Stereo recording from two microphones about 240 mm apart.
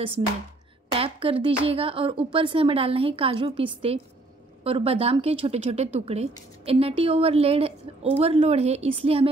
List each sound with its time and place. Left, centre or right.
0.9 s speech: right